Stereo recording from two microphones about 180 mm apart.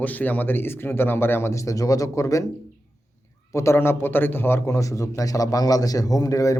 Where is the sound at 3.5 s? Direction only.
15° left (ahead or behind).